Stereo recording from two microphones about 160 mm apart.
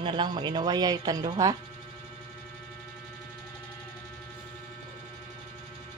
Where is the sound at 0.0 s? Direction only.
30° right (ahead or behind).